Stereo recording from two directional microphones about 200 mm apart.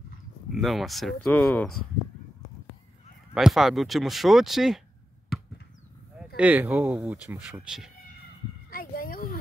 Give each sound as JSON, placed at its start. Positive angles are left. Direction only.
{"t": 0.6, "sound": "speech", "side_deg": 0}
{"t": 3.3, "sound": "speech", "side_deg": 0}
{"t": 6.1, "sound": "speech", "side_deg": -5}
{"t": 8.6, "sound": "a sound", "side_deg": 45}